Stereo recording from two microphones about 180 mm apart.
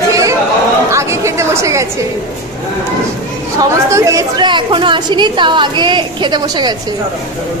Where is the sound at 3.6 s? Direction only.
15° right (ahead or behind).